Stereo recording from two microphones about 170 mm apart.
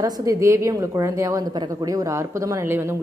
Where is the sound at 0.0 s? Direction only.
20° right (ahead or behind).